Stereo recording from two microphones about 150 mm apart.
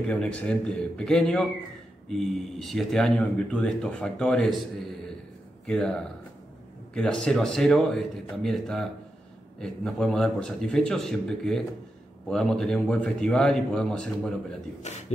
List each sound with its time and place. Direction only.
0.0 s speech: 5° left (ahead or behind)
5.7 s speech: 5° left (ahead or behind)
14.8 s speech: 50° left (ahead or behind)